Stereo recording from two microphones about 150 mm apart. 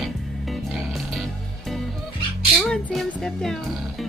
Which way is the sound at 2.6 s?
Centre (ahead or behind).